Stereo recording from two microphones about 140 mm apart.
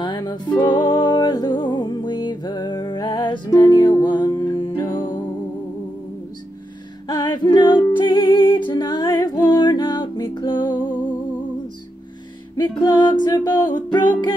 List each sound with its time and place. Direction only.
0.0 s music: 30° left (ahead or behind)
7.1 s music: 30° left (ahead or behind)
12.5 s music: 30° left (ahead or behind)